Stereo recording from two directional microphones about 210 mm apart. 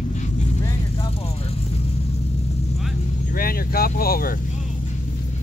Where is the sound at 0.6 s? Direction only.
25° left (ahead or behind).